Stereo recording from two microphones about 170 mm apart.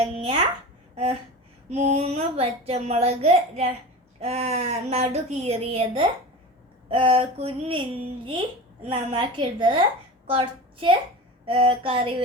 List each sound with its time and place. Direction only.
0.0 s a sound: 35° right (ahead or behind)
1.7 s a child's voice: 40° right (ahead or behind)
10.2 s child singing: 30° right (ahead or behind)
11.4 s a child's voice: 30° right (ahead or behind)